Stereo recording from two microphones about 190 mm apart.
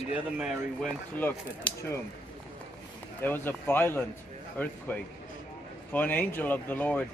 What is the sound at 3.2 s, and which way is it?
Speech, 10° left (ahead or behind).